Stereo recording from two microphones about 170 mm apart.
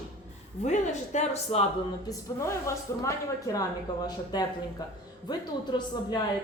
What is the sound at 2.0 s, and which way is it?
Speech, 15° left (ahead or behind).